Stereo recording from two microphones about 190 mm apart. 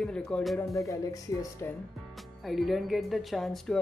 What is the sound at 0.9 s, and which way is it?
Speech, 15° left (ahead or behind).